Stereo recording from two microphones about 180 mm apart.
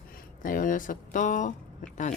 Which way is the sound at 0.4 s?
50° left (ahead or behind).